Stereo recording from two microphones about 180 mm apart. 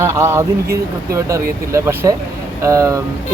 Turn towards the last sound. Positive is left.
turn(degrees=-20)  # may be behind; listen again after turning